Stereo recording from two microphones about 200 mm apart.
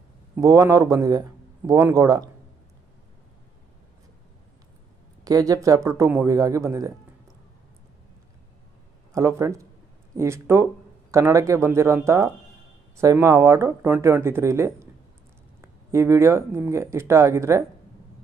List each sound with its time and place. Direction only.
0.4 s speech: 15° right (ahead or behind)
5.2 s speech: 15° right (ahead or behind)
9.1 s speech: 15° right (ahead or behind)